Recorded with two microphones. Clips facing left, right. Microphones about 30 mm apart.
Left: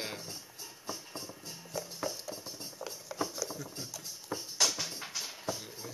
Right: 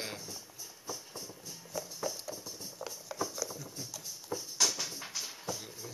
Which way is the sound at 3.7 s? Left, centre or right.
Left.